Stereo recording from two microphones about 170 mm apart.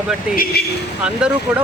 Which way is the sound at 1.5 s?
5° right (ahead or behind).